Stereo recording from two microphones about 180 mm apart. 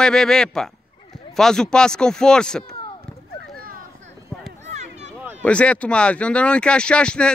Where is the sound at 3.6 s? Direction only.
50° right (ahead or behind).